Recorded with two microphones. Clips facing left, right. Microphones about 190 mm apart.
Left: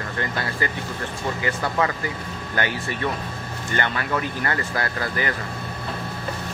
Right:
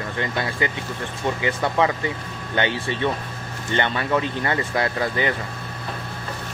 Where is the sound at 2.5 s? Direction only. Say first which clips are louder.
Right 3 dB; 25° right (ahead or behind).